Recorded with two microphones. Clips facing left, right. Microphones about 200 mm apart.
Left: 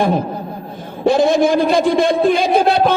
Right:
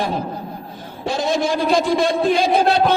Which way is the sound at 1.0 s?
55° left (ahead or behind).